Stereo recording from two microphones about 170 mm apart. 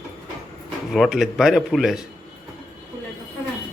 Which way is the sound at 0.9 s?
5° right (ahead or behind).